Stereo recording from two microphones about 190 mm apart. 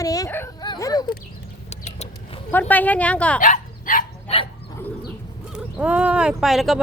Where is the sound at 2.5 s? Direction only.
10° left (ahead or behind).